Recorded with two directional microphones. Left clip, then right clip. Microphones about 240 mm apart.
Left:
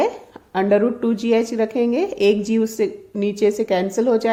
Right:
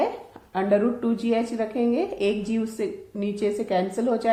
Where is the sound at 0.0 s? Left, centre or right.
Left.